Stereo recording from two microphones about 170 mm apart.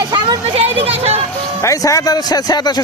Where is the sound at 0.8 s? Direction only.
35° right (ahead or behind).